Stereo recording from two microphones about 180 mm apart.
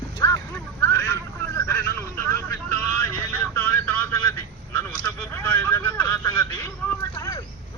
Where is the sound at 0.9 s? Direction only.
15° left (ahead or behind).